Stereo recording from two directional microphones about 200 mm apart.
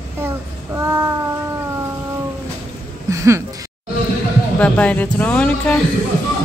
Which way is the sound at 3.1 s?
15° right (ahead or behind).